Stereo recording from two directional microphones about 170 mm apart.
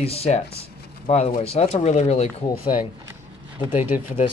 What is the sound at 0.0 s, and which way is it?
Speech, 35° left (ahead or behind).